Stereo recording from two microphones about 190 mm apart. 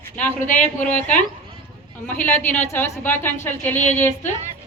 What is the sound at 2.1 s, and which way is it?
A woman's voice, 10° left (ahead or behind).